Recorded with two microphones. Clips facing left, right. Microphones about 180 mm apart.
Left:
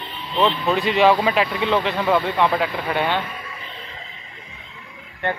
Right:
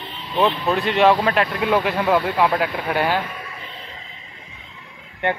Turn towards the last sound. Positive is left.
turn(degrees=-20)  # may be behind; listen again after turning